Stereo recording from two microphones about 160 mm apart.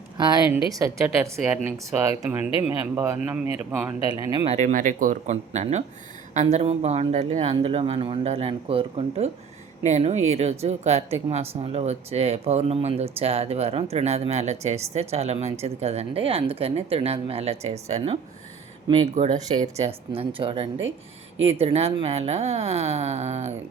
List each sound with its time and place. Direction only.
0.2 s speech: 25° right (ahead or behind); by 3.9 s 10° right (ahead or behind)
4.2 s speech: 25° right (ahead or behind)
4.4 s a woman's voice: 45° right (ahead or behind)